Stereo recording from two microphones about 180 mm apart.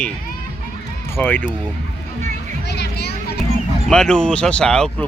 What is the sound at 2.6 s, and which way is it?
Speech, 65° left (ahead or behind).